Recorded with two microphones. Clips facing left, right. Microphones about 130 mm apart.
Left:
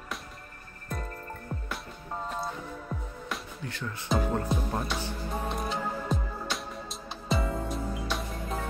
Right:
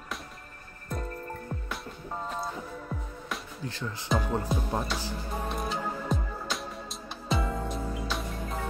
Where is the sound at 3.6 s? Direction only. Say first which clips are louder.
Right 2 dB; 30° right (ahead or behind).